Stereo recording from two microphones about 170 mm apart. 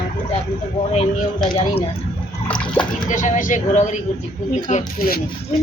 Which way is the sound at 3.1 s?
50° left (ahead or behind).